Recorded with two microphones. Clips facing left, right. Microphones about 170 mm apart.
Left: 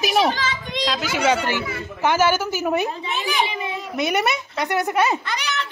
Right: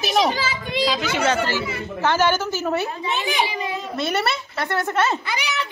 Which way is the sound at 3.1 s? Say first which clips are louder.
Right 3 dB; 20° right (ahead or behind).